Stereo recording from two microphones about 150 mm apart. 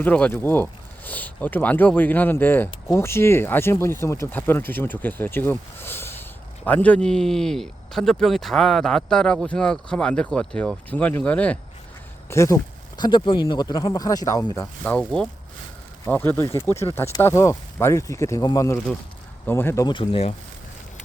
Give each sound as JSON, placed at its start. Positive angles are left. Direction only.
{"t": 0.0, "sound": "speech", "side_deg": 10}
{"t": 12.3, "sound": "speech", "side_deg": 20}
{"t": 13.0, "sound": "speech", "side_deg": 30}
{"t": 14.8, "sound": "speech", "side_deg": 5}
{"t": 19.9, "sound": "speech", "side_deg": 35}